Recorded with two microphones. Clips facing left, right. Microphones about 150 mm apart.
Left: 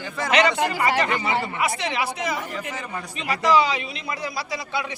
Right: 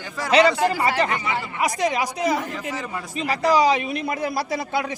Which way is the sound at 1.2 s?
30° left (ahead or behind).